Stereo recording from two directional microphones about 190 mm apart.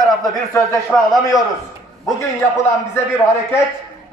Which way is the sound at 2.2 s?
15° left (ahead or behind).